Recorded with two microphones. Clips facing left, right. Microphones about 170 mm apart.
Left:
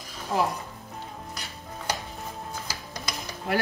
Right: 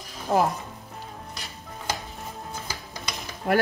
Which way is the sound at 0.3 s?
65° right (ahead or behind).